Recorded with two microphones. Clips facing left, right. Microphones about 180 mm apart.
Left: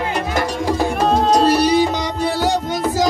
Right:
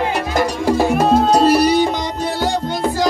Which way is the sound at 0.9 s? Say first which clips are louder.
Even; 10° right (ahead or behind).